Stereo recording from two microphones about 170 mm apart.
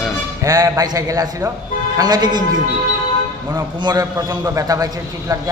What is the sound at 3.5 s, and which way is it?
A man's voice, 20° right (ahead or behind).